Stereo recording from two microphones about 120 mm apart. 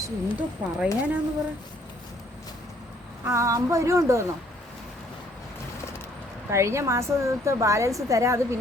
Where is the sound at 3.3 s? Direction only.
25° right (ahead or behind).